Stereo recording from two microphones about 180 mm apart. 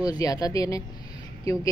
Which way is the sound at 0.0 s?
20° left (ahead or behind).